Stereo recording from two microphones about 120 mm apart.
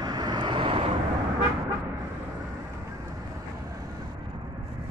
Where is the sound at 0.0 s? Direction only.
35° right (ahead or behind).